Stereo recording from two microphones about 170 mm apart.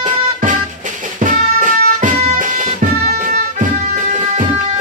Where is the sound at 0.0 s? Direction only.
50° right (ahead or behind).